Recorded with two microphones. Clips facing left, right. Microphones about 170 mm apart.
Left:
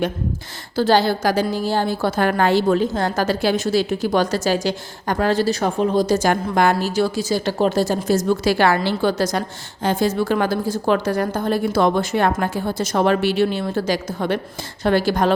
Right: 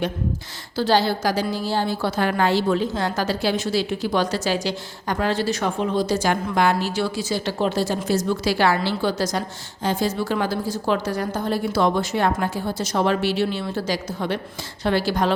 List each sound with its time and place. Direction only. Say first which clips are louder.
0.8 s a woman's voice: left 3 dB; 50° left (ahead or behind)